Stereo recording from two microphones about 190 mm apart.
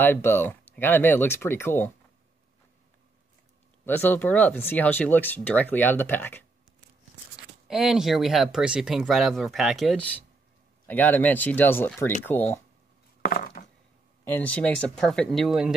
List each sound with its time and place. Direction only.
0.0 s speech: 10° left (ahead or behind)
3.8 s speech: 10° left (ahead or behind)
7.3 s speech: centre (ahead or behind)
13.2 s a sound: 45° left (ahead or behind)
14.2 s speech: 10° left (ahead or behind)